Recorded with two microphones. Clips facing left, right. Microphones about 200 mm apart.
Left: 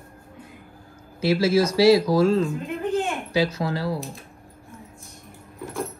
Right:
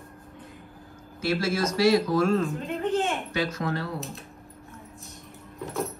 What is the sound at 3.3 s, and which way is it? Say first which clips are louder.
Speech: left 5 dB; 30° left (ahead or behind).